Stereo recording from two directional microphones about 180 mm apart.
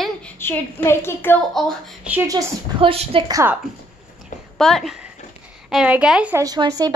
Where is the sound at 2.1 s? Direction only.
15° right (ahead or behind).